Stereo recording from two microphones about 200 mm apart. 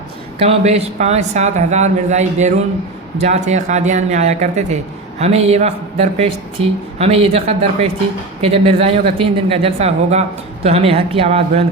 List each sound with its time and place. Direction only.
0.3 s speech: 30° right (ahead or behind)